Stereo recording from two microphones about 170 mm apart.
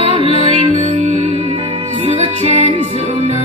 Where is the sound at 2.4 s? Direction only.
40° right (ahead or behind).